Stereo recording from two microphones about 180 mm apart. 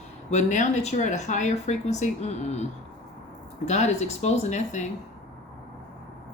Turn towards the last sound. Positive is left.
turn(degrees=40)  # may be behind; listen again after turning